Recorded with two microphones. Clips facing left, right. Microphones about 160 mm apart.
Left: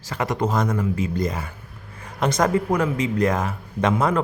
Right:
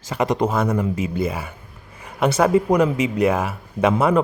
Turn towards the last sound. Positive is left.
turn(degrees=-10)  # may be behind; listen again after turning